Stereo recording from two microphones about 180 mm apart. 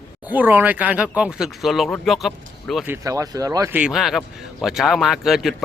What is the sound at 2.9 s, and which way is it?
Speech, 20° right (ahead or behind).